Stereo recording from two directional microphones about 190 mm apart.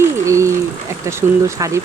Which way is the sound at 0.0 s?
15° right (ahead or behind).